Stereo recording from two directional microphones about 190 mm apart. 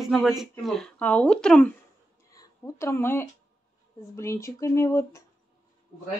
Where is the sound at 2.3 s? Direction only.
15° left (ahead or behind).